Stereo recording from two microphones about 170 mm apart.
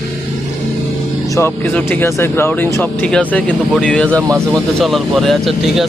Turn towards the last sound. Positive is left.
turn(degrees=0)  # may be behind; listen again after turning